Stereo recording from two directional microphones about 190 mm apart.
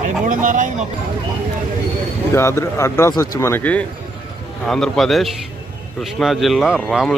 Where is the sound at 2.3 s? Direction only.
15° left (ahead or behind).